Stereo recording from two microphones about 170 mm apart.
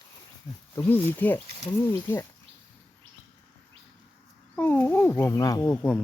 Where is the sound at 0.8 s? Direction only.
10° left (ahead or behind).